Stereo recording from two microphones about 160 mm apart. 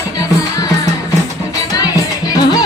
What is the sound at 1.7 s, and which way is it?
Music, 25° left (ahead or behind).